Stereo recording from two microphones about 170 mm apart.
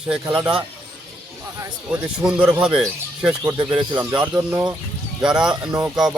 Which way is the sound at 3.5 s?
15° right (ahead or behind).